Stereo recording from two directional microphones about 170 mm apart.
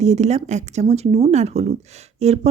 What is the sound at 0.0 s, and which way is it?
A woman's voice, 40° right (ahead or behind).